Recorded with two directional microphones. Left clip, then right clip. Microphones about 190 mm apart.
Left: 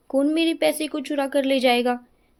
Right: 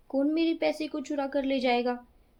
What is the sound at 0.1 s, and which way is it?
A woman's voice, 40° left (ahead or behind).